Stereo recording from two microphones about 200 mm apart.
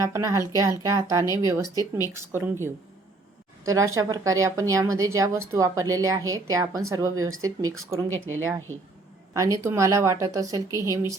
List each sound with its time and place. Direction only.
0.0 s a woman's voice: 15° right (ahead or behind)
3.6 s a woman's voice: 15° right (ahead or behind)
8.1 s speech: 90° right
9.3 s a woman's voice: 15° right (ahead or behind)